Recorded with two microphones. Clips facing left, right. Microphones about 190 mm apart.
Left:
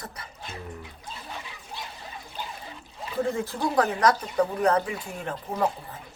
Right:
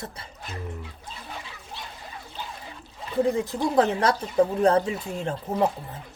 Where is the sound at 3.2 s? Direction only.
15° right (ahead or behind).